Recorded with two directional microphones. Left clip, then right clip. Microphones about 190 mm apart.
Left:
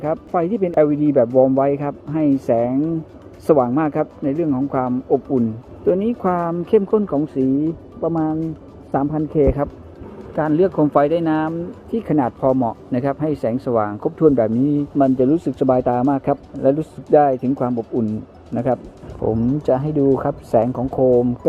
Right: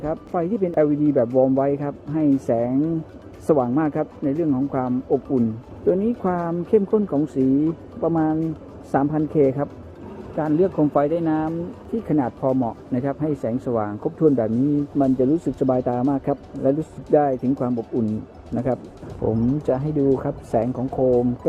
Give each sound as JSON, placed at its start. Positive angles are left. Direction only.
{"t": 0.0, "sound": "speech", "side_deg": 0}
{"t": 8.0, "sound": "a man's voice", "side_deg": -15}
{"t": 10.3, "sound": "speech", "side_deg": 0}